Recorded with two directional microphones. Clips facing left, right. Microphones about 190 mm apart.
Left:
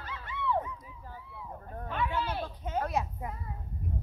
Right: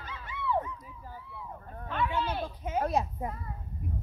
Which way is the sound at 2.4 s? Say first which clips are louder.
Right 2 dB; 10° right (ahead or behind).